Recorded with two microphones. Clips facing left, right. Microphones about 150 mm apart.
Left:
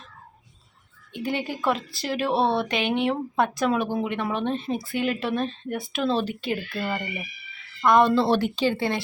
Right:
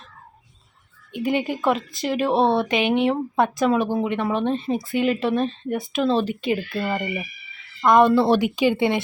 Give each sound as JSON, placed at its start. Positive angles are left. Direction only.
{"t": 1.1, "sound": "speech", "side_deg": 0}
{"t": 6.7, "sound": "speech", "side_deg": -20}